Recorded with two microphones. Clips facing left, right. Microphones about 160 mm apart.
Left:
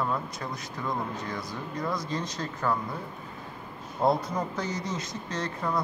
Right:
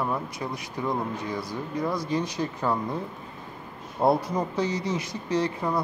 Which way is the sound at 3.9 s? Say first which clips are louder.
Right 3 dB; 15° right (ahead or behind).